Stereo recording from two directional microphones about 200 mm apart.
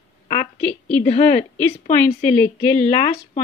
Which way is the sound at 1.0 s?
35° left (ahead or behind).